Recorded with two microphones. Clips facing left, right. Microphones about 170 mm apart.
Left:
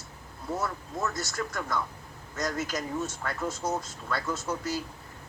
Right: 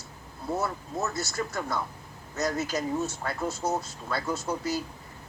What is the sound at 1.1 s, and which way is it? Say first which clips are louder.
Speech: right 2 dB; 10° right (ahead or behind).